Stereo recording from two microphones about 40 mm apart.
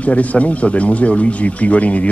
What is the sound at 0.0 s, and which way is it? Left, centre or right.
Speech, left.